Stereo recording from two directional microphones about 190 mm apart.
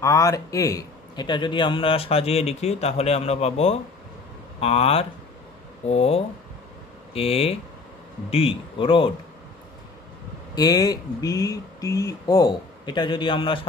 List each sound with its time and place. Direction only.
0.0 s a man's voice: 15° left (ahead or behind)
10.5 s speech: 20° left (ahead or behind)